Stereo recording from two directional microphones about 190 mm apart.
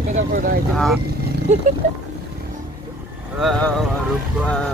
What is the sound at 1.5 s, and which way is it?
Speech, 40° right (ahead or behind).